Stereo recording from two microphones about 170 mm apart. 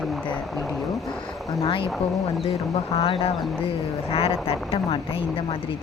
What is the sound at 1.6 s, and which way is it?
Speech, 30° left (ahead or behind).